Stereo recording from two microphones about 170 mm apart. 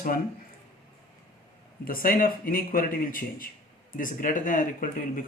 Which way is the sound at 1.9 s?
55° left (ahead or behind).